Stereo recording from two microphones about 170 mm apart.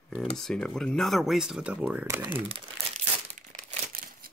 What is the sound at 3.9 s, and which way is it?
Crumpling, 60° right (ahead or behind).